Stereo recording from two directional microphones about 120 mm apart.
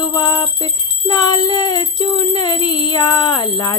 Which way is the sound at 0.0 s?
35° left (ahead or behind).